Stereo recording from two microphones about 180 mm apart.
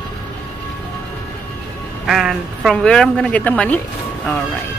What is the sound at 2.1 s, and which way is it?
A woman's voice, centre (ahead or behind).